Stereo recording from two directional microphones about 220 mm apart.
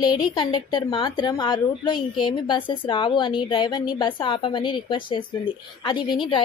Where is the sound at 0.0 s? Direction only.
20° left (ahead or behind).